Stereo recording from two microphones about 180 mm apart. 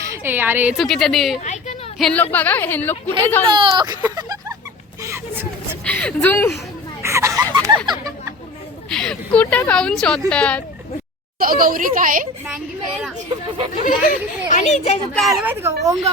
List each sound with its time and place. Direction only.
0.1 s a woman's voice: 10° right (ahead or behind); by 2.9 s 10° left (ahead or behind)
3.4 s speech: 25° right (ahead or behind)
4.0 s a sound: 20° right (ahead or behind)
5.8 s a woman's voice: 5° left (ahead or behind)
7.0 s a sound: 15° right (ahead or behind)
7.9 s chatter: 20° right (ahead or behind)
8.9 s speech: 5° left (ahead or behind)
11.3 s speech: 50° right (ahead or behind)
13.8 s speech: 45° left (ahead or behind)
15.1 s speech: centre (ahead or behind)
15.4 s speech: 15° right (ahead or behind)